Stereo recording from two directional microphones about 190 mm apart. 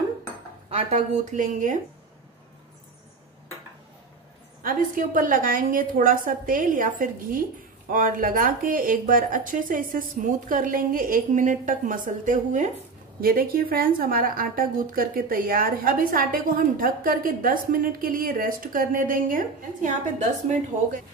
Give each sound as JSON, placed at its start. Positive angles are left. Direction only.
{"t": 0.7, "sound": "speech", "side_deg": -35}
{"t": 4.6, "sound": "a woman's voice", "side_deg": -45}